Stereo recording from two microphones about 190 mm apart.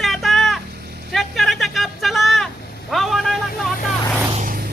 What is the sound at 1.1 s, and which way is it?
Vehicle, centre (ahead or behind).